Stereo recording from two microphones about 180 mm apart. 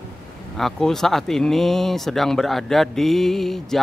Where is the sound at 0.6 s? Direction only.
Centre (ahead or behind).